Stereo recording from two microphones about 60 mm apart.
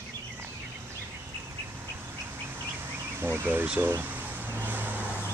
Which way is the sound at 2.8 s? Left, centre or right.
Right.